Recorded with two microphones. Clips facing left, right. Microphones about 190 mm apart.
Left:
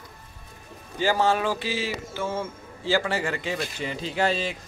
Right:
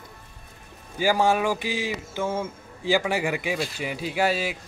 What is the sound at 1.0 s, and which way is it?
Speech, 10° right (ahead or behind).